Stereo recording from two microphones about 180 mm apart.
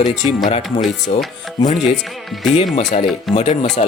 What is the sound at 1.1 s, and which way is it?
Speech, 35° left (ahead or behind).